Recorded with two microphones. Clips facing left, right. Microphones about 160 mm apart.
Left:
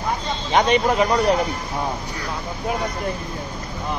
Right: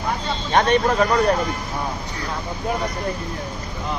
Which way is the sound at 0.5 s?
10° left (ahead or behind).